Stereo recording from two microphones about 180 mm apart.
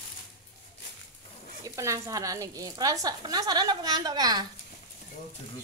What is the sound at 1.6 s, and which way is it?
Speech, 15° right (ahead or behind).